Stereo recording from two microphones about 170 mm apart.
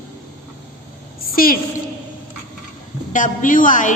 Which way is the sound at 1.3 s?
55° left (ahead or behind).